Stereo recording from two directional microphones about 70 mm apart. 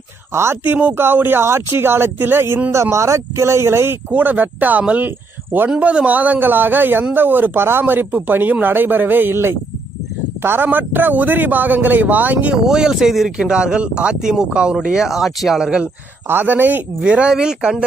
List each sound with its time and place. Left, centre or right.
0.3 s speech: right
2.7 s speech: right
4.1 s speech: right
12.6 s speech: centre
16.3 s speech: right
17.0 s speech: centre